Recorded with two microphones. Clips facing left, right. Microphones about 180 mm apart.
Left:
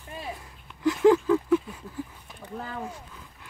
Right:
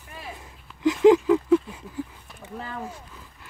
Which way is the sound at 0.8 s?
20° right (ahead or behind).